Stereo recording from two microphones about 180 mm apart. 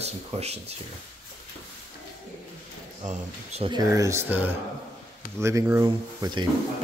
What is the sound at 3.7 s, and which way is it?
Speech, 20° right (ahead or behind).